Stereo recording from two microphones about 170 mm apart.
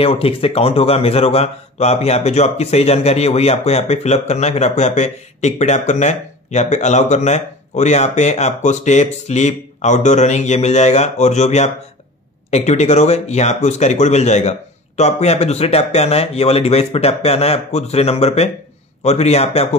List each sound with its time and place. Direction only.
0.0 s speech: 35° left (ahead or behind)